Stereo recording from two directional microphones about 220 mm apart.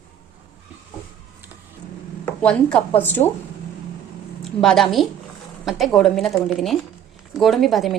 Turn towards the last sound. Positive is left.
turn(degrees=0)  # may be behind; listen again after turning